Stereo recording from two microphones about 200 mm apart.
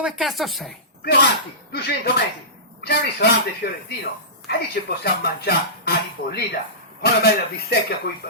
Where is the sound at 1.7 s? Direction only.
50° left (ahead or behind).